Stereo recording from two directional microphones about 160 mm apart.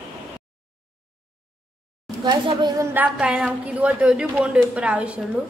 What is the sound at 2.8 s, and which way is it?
A woman's voice, 10° right (ahead or behind).